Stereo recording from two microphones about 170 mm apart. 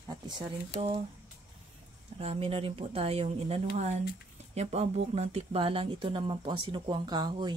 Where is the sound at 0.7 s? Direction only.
35° right (ahead or behind).